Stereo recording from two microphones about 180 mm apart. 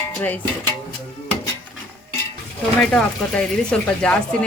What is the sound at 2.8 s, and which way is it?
Speech, 5° left (ahead or behind).